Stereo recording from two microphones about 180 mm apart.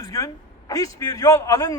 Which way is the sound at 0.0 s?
20° left (ahead or behind).